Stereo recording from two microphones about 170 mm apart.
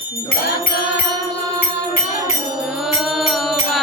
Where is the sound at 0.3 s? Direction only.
55° left (ahead or behind).